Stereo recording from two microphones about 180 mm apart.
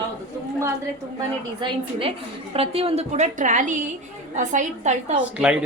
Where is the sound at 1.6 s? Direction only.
30° right (ahead or behind).